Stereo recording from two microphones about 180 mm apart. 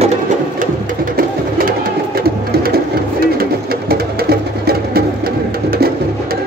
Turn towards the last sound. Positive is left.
turn(degrees=-60)  # may be behind; listen again after turning